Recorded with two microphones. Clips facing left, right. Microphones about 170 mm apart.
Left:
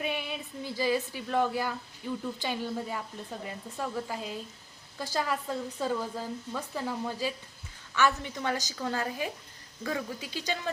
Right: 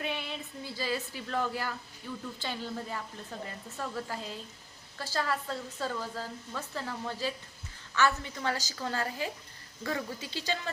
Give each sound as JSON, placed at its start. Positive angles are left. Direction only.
{"t": 0.0, "sound": "speech", "side_deg": 15}